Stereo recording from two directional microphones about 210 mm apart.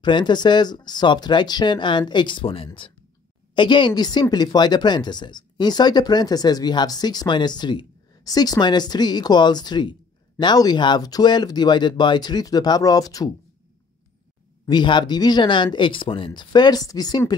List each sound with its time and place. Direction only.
0.0 s speech: 20° left (ahead or behind)
14.7 s speech: 20° left (ahead or behind)